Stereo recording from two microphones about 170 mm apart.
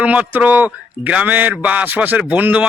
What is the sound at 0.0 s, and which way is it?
A man's voice, 10° right (ahead or behind).